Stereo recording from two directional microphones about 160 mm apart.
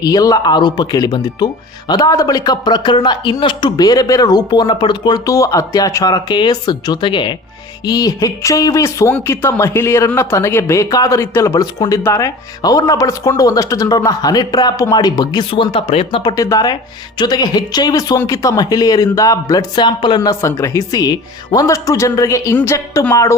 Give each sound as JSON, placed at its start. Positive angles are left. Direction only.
{"t": 0.0, "sound": "speech", "side_deg": 25}
{"t": 16.3, "sound": "speech", "side_deg": 20}